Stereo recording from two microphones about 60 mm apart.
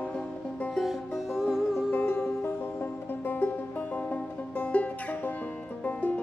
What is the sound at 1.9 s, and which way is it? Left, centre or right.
Music, left.